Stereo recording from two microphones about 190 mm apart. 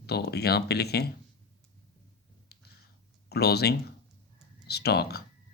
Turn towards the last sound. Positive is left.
turn(degrees=55)  # may be behind; listen again after turning